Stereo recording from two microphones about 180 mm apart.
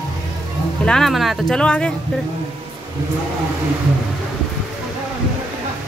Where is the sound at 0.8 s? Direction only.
5° left (ahead or behind).